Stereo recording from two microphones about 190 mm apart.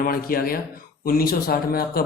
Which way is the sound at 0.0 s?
50° left (ahead or behind).